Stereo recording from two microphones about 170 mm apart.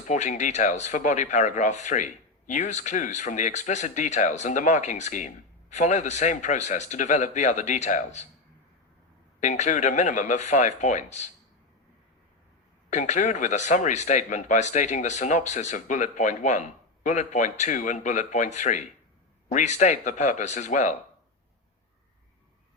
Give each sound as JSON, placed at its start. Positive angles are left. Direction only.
{"t": 0.1, "sound": "speech", "side_deg": 45}
{"t": 9.4, "sound": "speech", "side_deg": 45}
{"t": 12.9, "sound": "speech", "side_deg": 45}